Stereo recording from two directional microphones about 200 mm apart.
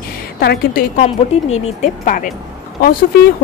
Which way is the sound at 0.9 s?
35° left (ahead or behind).